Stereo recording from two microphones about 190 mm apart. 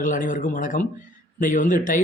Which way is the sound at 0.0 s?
45° left (ahead or behind).